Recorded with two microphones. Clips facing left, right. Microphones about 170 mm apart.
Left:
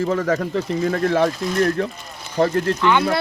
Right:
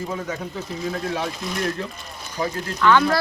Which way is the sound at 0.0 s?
85° left.